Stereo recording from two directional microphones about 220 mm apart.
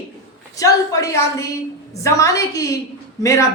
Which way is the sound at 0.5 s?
15° left (ahead or behind).